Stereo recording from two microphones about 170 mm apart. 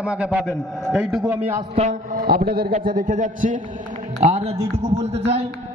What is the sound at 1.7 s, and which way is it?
Speech, 40° right (ahead or behind).